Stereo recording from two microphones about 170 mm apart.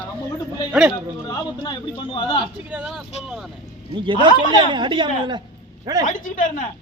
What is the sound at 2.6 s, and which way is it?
Speech, 5° right (ahead or behind).